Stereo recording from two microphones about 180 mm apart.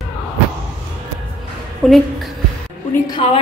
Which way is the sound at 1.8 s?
Centre (ahead or behind).